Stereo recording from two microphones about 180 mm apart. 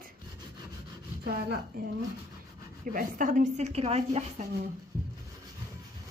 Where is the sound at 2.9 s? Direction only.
50° right (ahead or behind).